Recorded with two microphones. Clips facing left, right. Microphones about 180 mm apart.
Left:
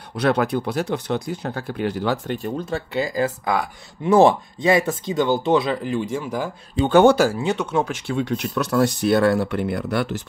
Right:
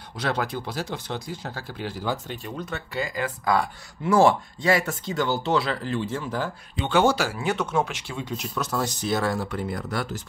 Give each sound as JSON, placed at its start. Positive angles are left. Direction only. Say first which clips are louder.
{"t": 0.1, "sound": "speech", "louder": "left 8 dB", "side_deg": 65}
{"t": 2.4, "sound": "speech", "louder": "left 7 dB", "side_deg": 30}
{"t": 3.4, "sound": "speech", "louder": "even", "side_deg": 20}
{"t": 6.9, "sound": "speech", "louder": "left 7 dB", "side_deg": 55}
{"t": 8.1, "sound": "speech", "louder": "left 8 dB", "side_deg": 65}